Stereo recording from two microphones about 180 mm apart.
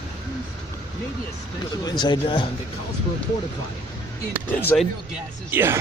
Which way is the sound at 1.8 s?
25° left (ahead or behind).